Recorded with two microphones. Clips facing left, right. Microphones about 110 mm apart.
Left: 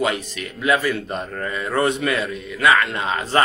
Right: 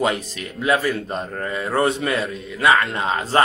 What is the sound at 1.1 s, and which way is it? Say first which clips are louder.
Speech: right 1 dB; 25° right (ahead or behind).